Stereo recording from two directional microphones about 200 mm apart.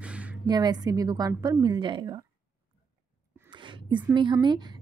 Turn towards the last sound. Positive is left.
turn(degrees=-20)  # may be behind; listen again after turning